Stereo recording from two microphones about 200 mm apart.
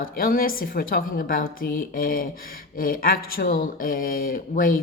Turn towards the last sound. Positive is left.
turn(degrees=45)  # may be behind; listen again after turning